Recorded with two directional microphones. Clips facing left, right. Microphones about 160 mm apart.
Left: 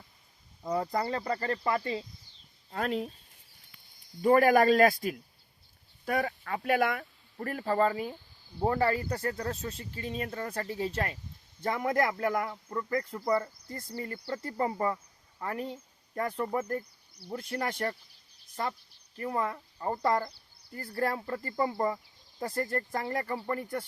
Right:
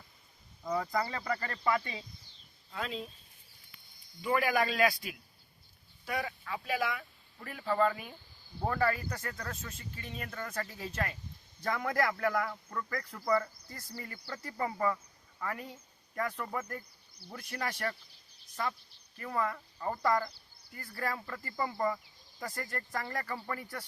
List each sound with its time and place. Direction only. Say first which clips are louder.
0.6 s speech: left 2 dB; 35° left (ahead or behind)
2.6 s speech: left 7 dB; 55° left (ahead or behind)
4.2 s a man's voice: left 8 dB; 45° left (ahead or behind); by 13.5 s 30° left (ahead or behind)
13.7 s speech: left 7 dB; 50° left (ahead or behind)
14.0 s a man's voice: left 8 dB; 30° left (ahead or behind)
19.2 s a man's voice: left 2 dB; 30° left (ahead or behind)